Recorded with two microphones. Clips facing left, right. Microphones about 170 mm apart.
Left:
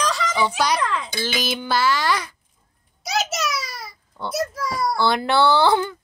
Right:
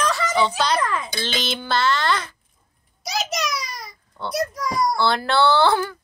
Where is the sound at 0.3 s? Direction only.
10° left (ahead or behind).